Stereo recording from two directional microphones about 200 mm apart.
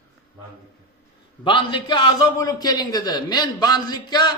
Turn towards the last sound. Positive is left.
turn(degrees=20)  # may be behind; listen again after turning